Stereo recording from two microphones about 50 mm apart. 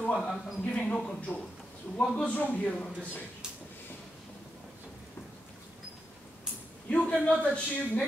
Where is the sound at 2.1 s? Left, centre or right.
Left.